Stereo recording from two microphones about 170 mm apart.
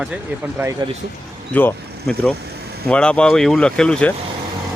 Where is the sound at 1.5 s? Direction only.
10° left (ahead or behind).